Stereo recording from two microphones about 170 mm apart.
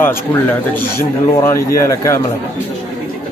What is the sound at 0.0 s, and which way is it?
A man's voice, 10° left (ahead or behind).